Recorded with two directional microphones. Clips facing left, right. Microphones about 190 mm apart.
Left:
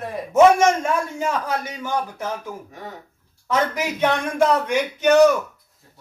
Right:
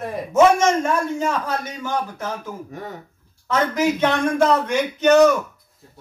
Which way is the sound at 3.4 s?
15° left (ahead or behind).